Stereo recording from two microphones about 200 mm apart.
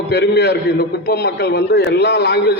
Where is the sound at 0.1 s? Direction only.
55° left (ahead or behind).